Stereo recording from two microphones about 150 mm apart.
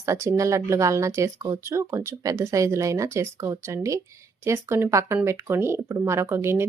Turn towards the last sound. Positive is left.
turn(degrees=-15)  # may be behind; listen again after turning